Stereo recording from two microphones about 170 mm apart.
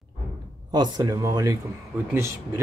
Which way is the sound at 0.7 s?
25° right (ahead or behind).